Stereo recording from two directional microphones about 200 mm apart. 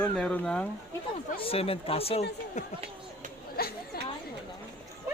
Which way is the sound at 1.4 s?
30° left (ahead or behind).